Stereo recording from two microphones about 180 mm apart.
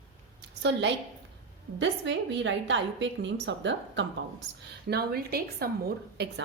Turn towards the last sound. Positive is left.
turn(degrees=-60)  # may be behind; listen again after turning